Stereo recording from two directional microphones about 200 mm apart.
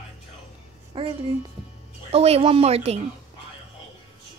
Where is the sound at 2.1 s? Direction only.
30° right (ahead or behind).